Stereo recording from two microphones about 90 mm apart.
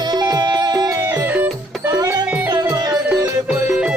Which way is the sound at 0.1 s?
50° right (ahead or behind).